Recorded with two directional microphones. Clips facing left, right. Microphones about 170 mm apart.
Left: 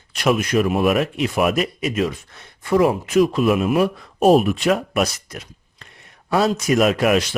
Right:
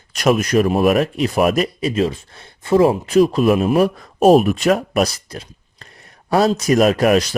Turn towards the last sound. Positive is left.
turn(degrees=-40)  # may be behind; listen again after turning